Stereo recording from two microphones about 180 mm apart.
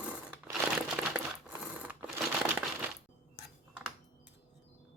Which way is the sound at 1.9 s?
10° right (ahead or behind).